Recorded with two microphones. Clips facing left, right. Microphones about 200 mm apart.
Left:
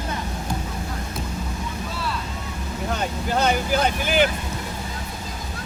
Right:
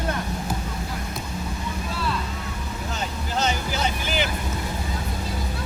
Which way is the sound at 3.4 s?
55° left (ahead or behind).